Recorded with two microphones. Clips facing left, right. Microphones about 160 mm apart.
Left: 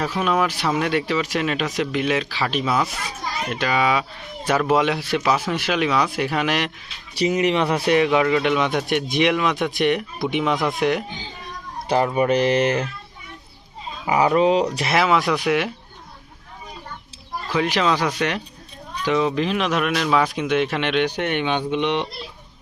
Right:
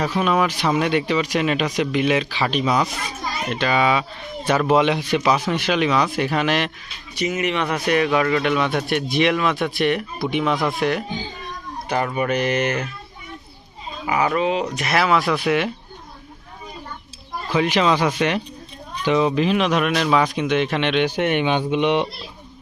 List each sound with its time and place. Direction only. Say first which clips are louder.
0.0 s speech: right 2 dB; 10° right (ahead or behind)
4.9 s speech: right 2 dB; 10° right (ahead or behind)
5.3 s speech: right 1 dB; 5° left (ahead or behind)
7.2 s speech: left 3 dB; 35° left (ahead or behind)
8.0 s speech: left 1 dB; 15° left (ahead or behind)
12.1 s speech: left 3 dB; 30° left (ahead or behind)
14.1 s speech: left 3 dB; 25° left (ahead or behind)
14.9 s speech: even; 20° left (ahead or behind)
17.5 s speech: right 2 dB; 10° right (ahead or behind)
21.2 s speech: right 3 dB; 10° right (ahead or behind)